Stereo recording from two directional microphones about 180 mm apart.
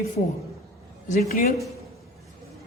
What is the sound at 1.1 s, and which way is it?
Speech, 50° left (ahead or behind).